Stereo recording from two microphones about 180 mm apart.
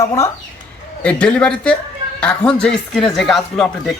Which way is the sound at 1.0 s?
5° left (ahead or behind).